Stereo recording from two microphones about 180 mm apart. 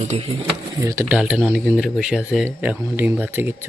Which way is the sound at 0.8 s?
15° right (ahead or behind).